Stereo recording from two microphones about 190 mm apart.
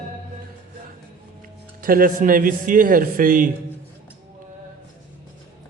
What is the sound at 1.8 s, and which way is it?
A man's voice, 45° right (ahead or behind).